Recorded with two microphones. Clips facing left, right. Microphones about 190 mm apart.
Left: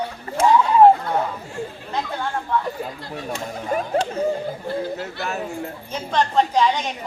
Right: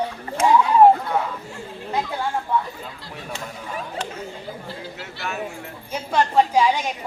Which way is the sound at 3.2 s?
45° left (ahead or behind).